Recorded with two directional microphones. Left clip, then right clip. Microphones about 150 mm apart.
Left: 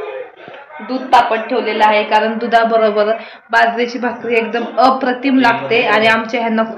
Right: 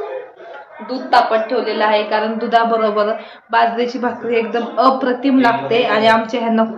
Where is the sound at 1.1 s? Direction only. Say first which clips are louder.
Left 2 dB; 20° left (ahead or behind).